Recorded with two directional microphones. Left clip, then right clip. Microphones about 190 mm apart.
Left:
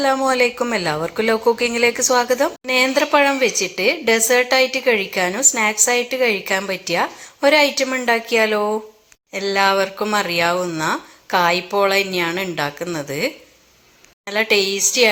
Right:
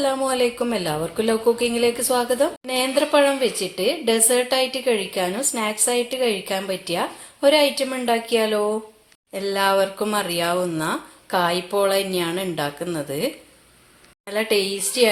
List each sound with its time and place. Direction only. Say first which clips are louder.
0.0 s a woman's voice: left 4 dB; 15° left (ahead or behind)